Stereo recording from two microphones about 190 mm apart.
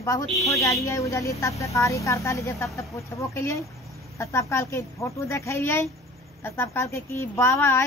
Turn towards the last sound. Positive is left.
turn(degrees=15)  # may be behind; listen again after turning